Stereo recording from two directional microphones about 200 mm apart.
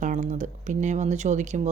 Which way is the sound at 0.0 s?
40° right (ahead or behind).